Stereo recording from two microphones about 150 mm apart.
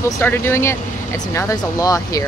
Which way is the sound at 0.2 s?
15° left (ahead or behind).